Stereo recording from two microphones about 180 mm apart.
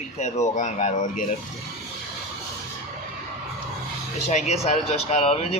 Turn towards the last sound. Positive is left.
turn(degrees=35)  # may be behind; listen again after turning